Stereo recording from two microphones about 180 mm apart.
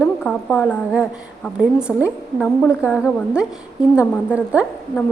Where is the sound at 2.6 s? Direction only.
10° left (ahead or behind).